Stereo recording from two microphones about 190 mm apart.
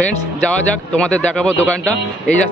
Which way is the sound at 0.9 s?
5° left (ahead or behind).